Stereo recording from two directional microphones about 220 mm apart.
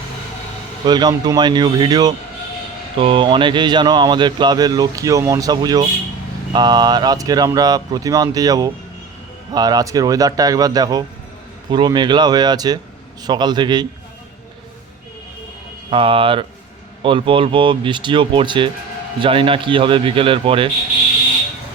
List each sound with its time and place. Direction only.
0.9 s speech: 20° right (ahead or behind)
15.9 s speech: 25° right (ahead or behind)